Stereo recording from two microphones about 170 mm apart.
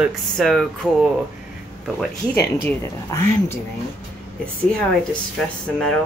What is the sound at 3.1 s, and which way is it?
Speech, 15° left (ahead or behind).